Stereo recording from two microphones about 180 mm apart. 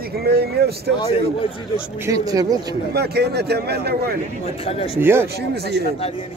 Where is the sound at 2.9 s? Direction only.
65° right (ahead or behind).